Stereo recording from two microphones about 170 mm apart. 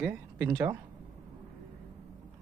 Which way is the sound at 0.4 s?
20° right (ahead or behind).